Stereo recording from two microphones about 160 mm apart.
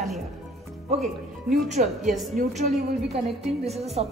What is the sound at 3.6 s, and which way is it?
Speech, 40° right (ahead or behind).